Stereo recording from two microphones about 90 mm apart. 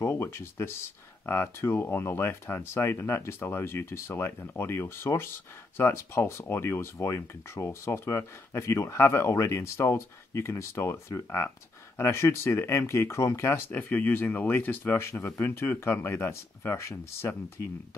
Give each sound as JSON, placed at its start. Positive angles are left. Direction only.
{"t": 0.0, "sound": "speech", "side_deg": 30}